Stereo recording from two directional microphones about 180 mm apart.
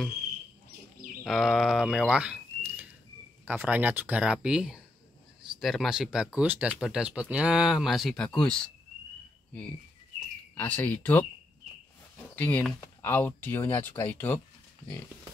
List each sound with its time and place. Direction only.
1.2 s speech: centre (ahead or behind)
10.5 s speech: 10° left (ahead or behind)
12.4 s speech: 10° left (ahead or behind)